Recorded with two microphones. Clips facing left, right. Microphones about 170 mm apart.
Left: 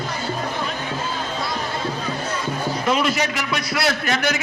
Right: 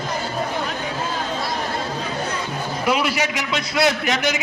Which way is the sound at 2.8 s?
10° right (ahead or behind).